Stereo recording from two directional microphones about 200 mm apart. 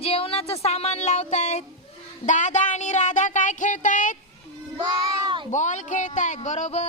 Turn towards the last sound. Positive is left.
turn(degrees=35)  # may be behind; listen again after turning